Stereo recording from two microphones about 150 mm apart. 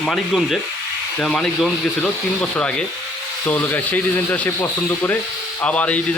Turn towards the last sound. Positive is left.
turn(degrees=10)  # may be behind; listen again after turning